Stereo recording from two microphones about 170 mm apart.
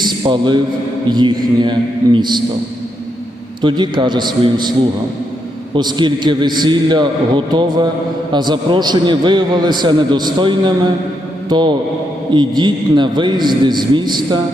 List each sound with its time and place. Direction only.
0.0 s a sound: 25° right (ahead or behind)
1.1 s a man's voice: 25° right (ahead or behind)
3.6 s a man's voice: 25° right (ahead or behind)
5.7 s a man's voice: 25° right (ahead or behind)